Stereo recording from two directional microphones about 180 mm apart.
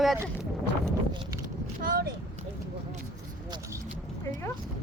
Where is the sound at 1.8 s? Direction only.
50° right (ahead or behind).